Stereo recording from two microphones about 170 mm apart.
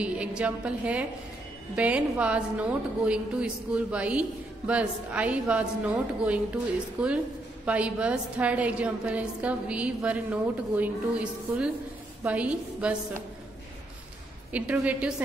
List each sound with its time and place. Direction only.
0.0 s a woman's voice: 5° right (ahead or behind)
14.5 s a woman's voice: 10° right (ahead or behind)